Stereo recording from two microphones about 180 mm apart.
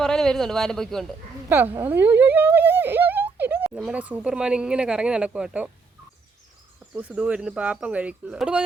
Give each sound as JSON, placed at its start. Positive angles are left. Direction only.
{"t": 0.0, "sound": "speech", "side_deg": 5}
{"t": 1.5, "sound": "a sound", "side_deg": -10}
{"t": 3.8, "sound": "speech", "side_deg": -5}
{"t": 6.9, "sound": "speech", "side_deg": -10}